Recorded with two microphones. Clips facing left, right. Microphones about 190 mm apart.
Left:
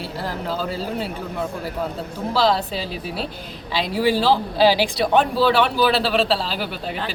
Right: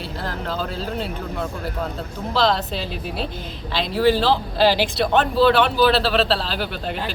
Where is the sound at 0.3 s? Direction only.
10° left (ahead or behind).